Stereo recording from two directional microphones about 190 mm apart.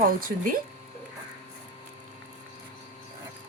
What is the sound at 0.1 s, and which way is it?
Speech, 50° right (ahead or behind).